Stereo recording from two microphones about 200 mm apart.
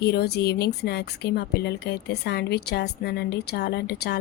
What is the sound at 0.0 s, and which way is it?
Speech, 55° left (ahead or behind).